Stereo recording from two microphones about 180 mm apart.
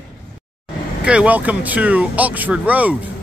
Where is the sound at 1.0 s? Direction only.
5° right (ahead or behind).